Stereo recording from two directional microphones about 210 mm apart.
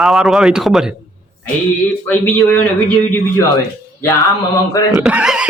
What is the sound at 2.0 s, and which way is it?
Speech, 5° left (ahead or behind).